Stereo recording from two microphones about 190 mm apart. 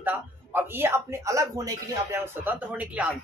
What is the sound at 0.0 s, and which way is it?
Speech, 10° right (ahead or behind).